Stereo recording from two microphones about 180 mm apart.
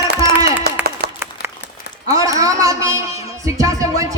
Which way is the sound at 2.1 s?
20° right (ahead or behind).